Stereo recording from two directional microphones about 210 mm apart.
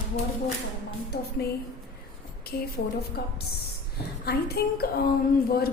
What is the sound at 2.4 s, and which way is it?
A woman's voice, 45° left (ahead or behind).